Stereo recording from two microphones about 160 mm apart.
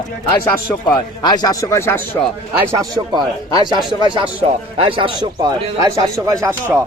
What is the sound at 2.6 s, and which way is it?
A man's voice, 20° right (ahead or behind).